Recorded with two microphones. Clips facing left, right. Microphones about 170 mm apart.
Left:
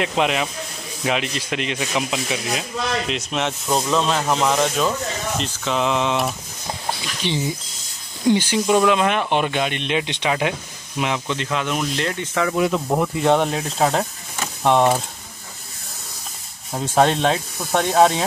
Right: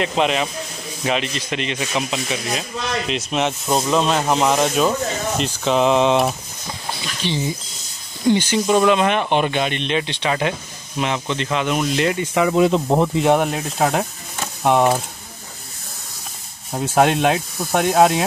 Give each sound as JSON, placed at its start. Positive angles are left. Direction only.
{"t": 0.0, "sound": "speech", "side_deg": 5}
{"t": 3.3, "sound": "speech", "side_deg": -10}
{"t": 5.6, "sound": "mantra", "side_deg": -20}
{"t": 7.2, "sound": "speech", "side_deg": 20}
{"t": 8.3, "sound": "speech", "side_deg": 10}
{"t": 12.5, "sound": "mantra", "side_deg": -25}
{"t": 13.3, "sound": "speech", "side_deg": -5}
{"t": 16.7, "sound": "speech", "side_deg": -5}